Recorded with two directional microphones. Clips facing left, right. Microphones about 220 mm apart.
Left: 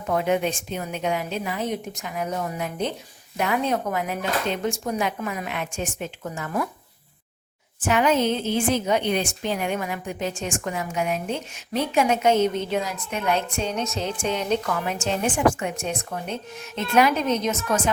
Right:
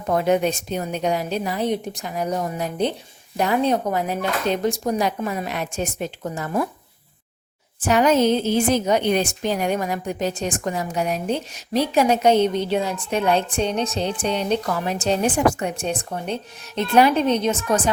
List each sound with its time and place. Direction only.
0.1 s a woman's voice: 40° right (ahead or behind)
7.8 s a woman's voice: 40° right (ahead or behind)